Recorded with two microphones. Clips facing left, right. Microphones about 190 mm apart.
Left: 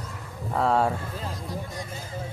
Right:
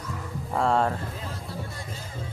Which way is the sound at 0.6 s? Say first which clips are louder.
Left 1 dB; 5° left (ahead or behind).